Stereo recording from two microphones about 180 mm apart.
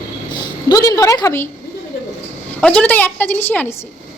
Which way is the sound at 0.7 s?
20° left (ahead or behind).